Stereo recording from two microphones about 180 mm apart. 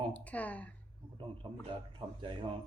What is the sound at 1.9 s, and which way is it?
Speech, 25° right (ahead or behind).